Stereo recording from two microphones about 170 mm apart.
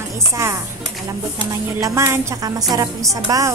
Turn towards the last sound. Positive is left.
turn(degrees=-20)  # may be behind; listen again after turning